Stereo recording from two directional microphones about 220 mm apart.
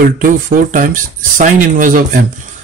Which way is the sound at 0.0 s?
40° right (ahead or behind).